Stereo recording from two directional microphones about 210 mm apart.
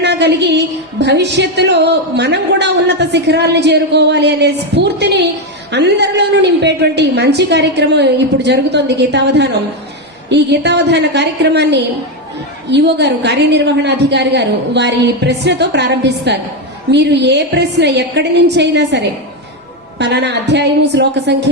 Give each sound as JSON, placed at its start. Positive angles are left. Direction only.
{"t": 0.0, "sound": "a woman's voice", "side_deg": -55}